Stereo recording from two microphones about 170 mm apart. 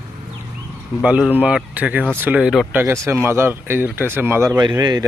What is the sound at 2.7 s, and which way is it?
Speech, 10° right (ahead or behind).